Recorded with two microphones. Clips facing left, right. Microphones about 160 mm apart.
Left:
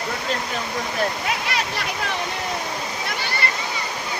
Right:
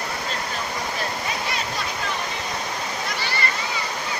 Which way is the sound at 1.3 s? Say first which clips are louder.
Left 2 dB; 75° left (ahead or behind).